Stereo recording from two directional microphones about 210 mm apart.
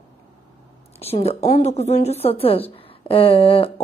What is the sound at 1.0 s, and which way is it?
A woman's voice, 30° left (ahead or behind).